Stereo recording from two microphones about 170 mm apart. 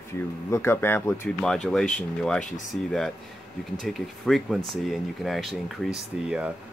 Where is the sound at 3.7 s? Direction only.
Centre (ahead or behind).